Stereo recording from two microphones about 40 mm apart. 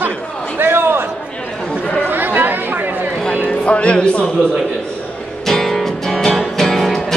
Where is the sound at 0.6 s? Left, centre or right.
Right.